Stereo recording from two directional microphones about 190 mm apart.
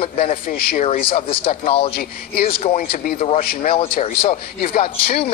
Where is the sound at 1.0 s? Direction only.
30° left (ahead or behind).